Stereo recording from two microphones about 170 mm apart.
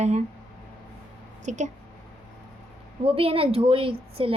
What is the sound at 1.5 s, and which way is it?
Speech, 45° right (ahead or behind).